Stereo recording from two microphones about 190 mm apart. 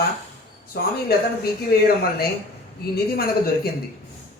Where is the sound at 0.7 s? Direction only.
55° left (ahead or behind).